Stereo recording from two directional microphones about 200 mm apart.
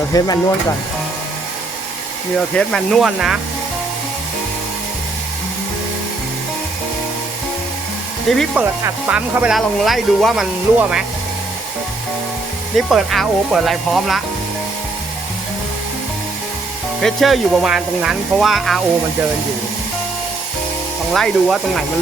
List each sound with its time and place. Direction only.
0.1 s speech: 20° left (ahead or behind)
2.6 s speech: centre (ahead or behind)
8.3 s speech: centre (ahead or behind)
12.7 s speech: centre (ahead or behind)
17.0 s speech: centre (ahead or behind)
21.1 s speech: centre (ahead or behind)